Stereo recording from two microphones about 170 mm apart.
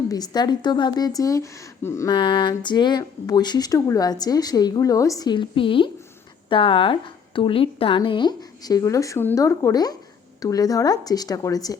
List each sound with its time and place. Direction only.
0.1 s a woman's voice: 25° left (ahead or behind)